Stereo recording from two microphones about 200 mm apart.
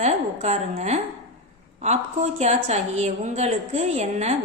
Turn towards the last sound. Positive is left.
turn(degrees=-35)  # may be behind; listen again after turning